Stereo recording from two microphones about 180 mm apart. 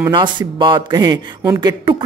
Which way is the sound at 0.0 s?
25° right (ahead or behind).